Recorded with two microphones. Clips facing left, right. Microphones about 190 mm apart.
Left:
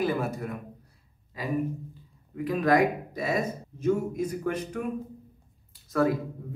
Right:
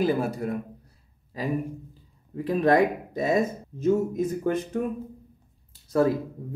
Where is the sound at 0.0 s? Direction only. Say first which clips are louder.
Right 3 dB; 30° right (ahead or behind).